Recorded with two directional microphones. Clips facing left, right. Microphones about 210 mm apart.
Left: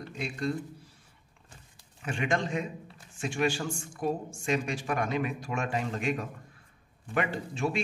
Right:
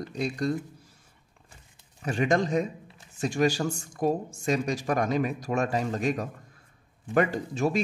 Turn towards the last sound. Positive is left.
turn(degrees=-40)  # may be behind; listen again after turning